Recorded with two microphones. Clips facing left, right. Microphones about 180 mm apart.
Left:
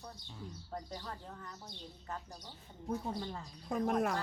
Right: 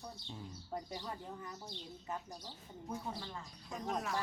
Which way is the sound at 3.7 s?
55° left (ahead or behind).